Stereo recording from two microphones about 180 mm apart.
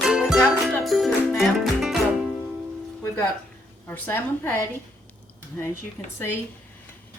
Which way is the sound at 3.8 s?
10° left (ahead or behind).